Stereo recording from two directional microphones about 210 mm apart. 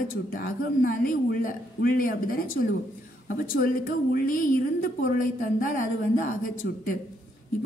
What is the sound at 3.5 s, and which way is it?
A woman's voice, 45° left (ahead or behind).